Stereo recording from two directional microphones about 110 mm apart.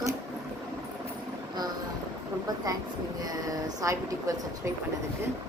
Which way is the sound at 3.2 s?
30° right (ahead or behind).